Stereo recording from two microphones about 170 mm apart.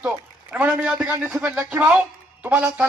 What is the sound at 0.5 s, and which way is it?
A man's voice, 5° right (ahead or behind).